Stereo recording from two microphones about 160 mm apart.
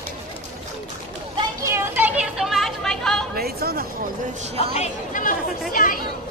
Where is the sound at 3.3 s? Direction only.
75° right (ahead or behind).